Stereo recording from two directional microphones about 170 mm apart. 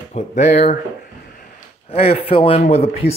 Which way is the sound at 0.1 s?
45° left (ahead or behind).